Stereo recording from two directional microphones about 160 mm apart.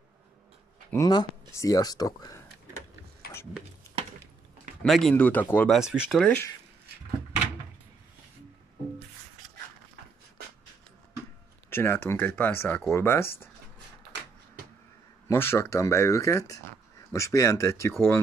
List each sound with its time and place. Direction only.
0.9 s speech: 25° left (ahead or behind)
4.8 s speech: centre (ahead or behind)
5.7 s speech: 5° right (ahead or behind)
6.2 s speech: 15° left (ahead or behind)
11.7 s speech: 15° left (ahead or behind)
15.2 s speech: 15° left (ahead or behind)